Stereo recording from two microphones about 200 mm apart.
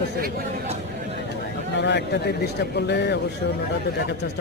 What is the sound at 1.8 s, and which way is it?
Speech, 60° left (ahead or behind).